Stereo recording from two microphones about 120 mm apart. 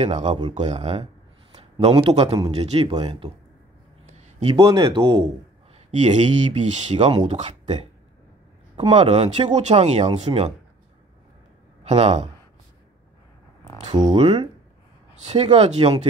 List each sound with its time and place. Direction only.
0.0 s speech: 65° right (ahead or behind)
1.6 s a sound: 60° right (ahead or behind)
2.0 s speech: 55° right (ahead or behind)
2.9 s speech: 40° right (ahead or behind)
4.4 s speech: 55° right (ahead or behind)
5.9 s speech: 70° right (ahead or behind)
11.8 s speech: 65° right (ahead or behind)
14.0 s speech: 55° right (ahead or behind)
15.1 s speech: 60° right (ahead or behind)